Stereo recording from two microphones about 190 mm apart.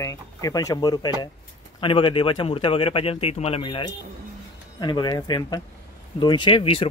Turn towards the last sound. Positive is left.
turn(degrees=25)  # may be behind; listen again after turning